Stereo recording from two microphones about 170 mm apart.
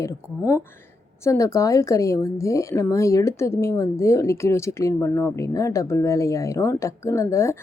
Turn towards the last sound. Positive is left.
turn(degrees=15)  # may be behind; listen again after turning